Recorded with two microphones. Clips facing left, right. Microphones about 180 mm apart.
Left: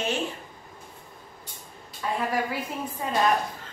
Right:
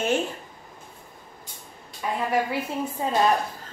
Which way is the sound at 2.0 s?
15° right (ahead or behind).